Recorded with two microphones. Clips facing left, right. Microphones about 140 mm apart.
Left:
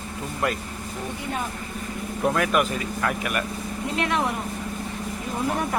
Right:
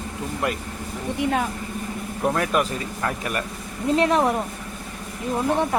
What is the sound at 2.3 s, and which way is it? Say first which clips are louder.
Speech: even; 30° right (ahead or behind).